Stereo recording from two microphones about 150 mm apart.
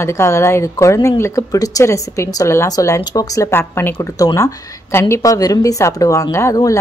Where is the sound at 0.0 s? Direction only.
20° left (ahead or behind).